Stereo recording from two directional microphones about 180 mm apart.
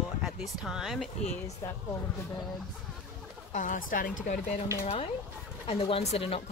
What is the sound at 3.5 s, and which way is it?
A woman's voice, 45° left (ahead or behind).